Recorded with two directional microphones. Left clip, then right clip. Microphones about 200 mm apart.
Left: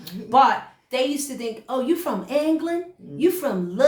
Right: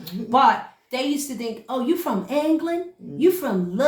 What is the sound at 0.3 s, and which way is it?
A woman's voice, 20° left (ahead or behind).